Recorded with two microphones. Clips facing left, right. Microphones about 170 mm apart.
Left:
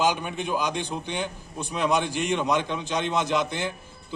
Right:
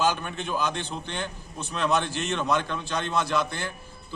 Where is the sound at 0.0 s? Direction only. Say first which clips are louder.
Left 1 dB; 15° left (ahead or behind).